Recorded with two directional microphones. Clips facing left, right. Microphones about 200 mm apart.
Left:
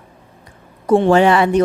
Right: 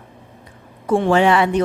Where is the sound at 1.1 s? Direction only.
40° left (ahead or behind).